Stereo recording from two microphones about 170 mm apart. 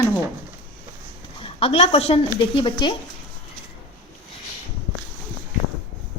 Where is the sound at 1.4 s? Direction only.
30° left (ahead or behind).